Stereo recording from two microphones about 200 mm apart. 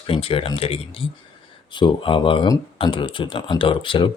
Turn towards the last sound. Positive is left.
turn(degrees=25)  # may be behind; listen again after turning